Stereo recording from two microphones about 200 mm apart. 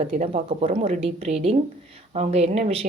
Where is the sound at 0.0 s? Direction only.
35° right (ahead or behind).